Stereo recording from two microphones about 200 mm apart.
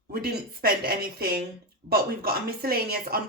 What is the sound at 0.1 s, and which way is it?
Speech, 50° right (ahead or behind).